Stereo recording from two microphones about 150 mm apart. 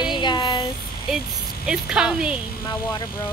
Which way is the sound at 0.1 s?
30° left (ahead or behind).